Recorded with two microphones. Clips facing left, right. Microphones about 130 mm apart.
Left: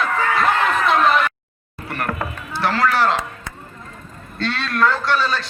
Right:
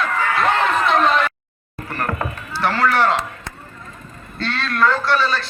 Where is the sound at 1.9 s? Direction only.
10° left (ahead or behind).